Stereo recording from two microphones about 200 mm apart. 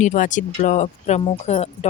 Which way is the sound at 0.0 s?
40° left (ahead or behind).